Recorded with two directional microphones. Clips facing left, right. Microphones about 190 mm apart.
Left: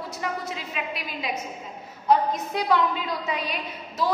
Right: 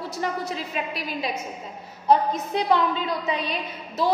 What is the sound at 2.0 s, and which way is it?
Speech, 25° right (ahead or behind).